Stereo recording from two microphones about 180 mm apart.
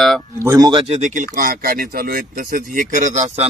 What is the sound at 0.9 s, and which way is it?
Speech, 40° right (ahead or behind).